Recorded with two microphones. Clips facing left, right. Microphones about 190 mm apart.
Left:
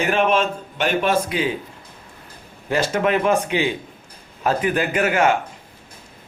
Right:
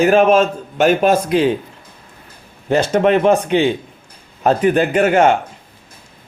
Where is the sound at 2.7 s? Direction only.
25° right (ahead or behind).